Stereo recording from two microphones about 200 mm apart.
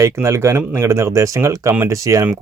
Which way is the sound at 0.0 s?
15° right (ahead or behind).